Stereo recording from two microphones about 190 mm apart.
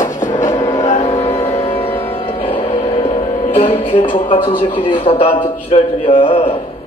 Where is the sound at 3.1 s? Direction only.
40° left (ahead or behind).